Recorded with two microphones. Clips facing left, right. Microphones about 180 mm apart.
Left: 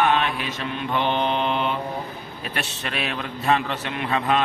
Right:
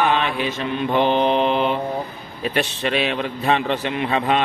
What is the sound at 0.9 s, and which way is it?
Mantra, 35° right (ahead or behind).